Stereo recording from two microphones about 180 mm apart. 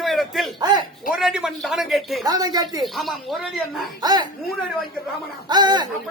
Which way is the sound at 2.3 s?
20° right (ahead or behind).